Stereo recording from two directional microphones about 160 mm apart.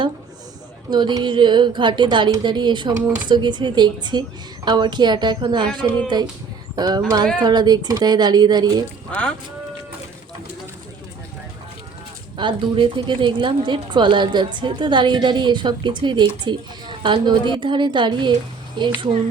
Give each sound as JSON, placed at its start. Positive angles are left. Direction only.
{"t": 0.9, "sound": "a woman's voice", "side_deg": -30}
{"t": 9.1, "sound": "speech", "side_deg": 10}
{"t": 12.4, "sound": "a woman's voice", "side_deg": -30}